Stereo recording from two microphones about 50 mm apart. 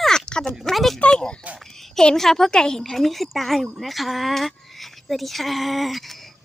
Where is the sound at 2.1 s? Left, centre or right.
Centre.